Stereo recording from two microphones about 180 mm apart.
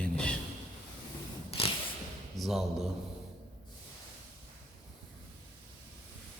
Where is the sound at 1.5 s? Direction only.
30° left (ahead or behind).